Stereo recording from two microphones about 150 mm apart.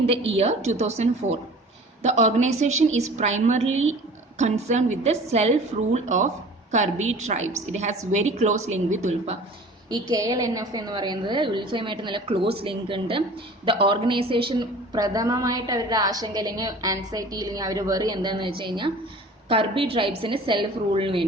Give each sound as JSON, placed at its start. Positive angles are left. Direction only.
{"t": 0.0, "sound": "a woman's voice", "side_deg": -40}
{"t": 9.9, "sound": "a woman's voice", "side_deg": -25}